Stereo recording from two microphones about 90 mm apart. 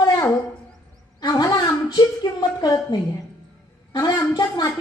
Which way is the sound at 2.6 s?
45° left (ahead or behind).